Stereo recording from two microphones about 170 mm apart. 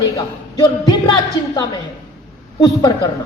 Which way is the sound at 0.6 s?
25° left (ahead or behind).